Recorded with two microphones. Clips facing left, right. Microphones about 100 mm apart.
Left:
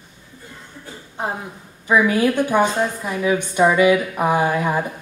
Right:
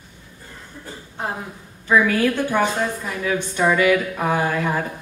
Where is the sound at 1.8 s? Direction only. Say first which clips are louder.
Left 1 dB; 15° left (ahead or behind).